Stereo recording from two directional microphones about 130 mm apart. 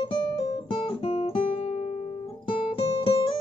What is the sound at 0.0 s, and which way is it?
Guitar, 35° left (ahead or behind).